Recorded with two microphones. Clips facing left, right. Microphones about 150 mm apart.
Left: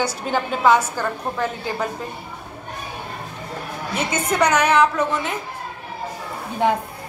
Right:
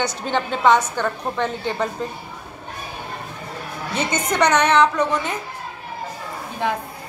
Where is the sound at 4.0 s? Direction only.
5° left (ahead or behind).